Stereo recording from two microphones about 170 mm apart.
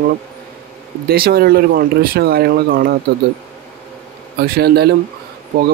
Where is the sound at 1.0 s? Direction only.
65° right (ahead or behind).